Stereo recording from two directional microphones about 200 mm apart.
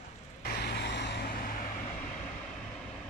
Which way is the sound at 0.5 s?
55° left (ahead or behind).